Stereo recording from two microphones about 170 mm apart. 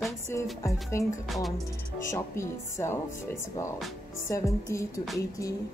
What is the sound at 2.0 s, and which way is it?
Speech, 15° left (ahead or behind).